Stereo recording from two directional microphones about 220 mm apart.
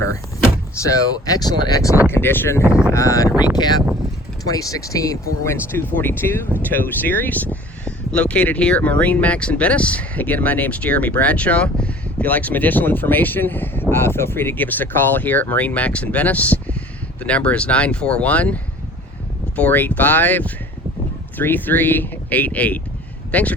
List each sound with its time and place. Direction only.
0.8 s speech: 15° left (ahead or behind)
3.2 s speech: 5° right (ahead or behind)
3.5 s speech: 20° left (ahead or behind)